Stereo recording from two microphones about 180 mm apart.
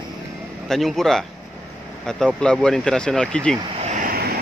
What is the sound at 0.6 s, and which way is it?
Speech, centre (ahead or behind).